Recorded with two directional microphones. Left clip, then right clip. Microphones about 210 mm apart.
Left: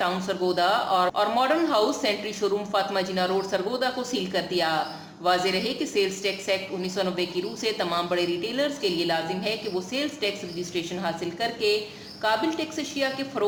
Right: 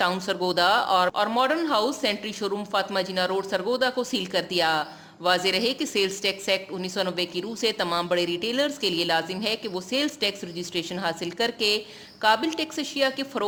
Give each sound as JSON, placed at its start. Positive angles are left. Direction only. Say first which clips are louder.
{"t": 0.0, "sound": "a woman's voice", "louder": "right 1 dB", "side_deg": -40}